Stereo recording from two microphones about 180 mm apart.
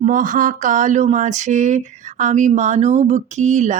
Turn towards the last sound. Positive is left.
turn(degrees=-40)  # may be behind; listen again after turning